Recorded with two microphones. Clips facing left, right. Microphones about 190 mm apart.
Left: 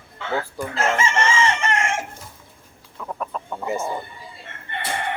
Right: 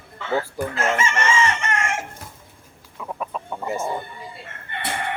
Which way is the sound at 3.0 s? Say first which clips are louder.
Even; 5° right (ahead or behind).